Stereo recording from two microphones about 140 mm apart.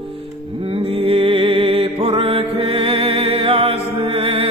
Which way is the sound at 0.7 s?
40° right (ahead or behind).